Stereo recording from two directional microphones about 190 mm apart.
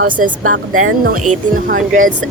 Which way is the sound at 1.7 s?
45° right (ahead or behind).